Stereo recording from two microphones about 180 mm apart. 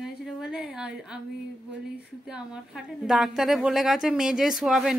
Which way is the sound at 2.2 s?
5° right (ahead or behind).